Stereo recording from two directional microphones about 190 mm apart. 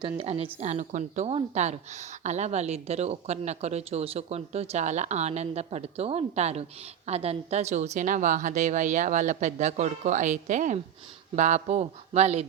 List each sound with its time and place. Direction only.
0.2 s a woman's voice: 30° right (ahead or behind)